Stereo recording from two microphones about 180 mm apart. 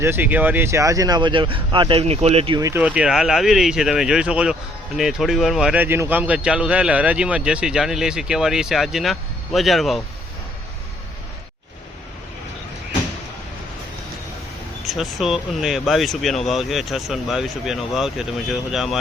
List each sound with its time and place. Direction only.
0.0 s speech: 10° right (ahead or behind); by 2.6 s 35° right (ahead or behind)
2.6 s a man's voice: 15° right (ahead or behind)
14.8 s a man's voice: centre (ahead or behind)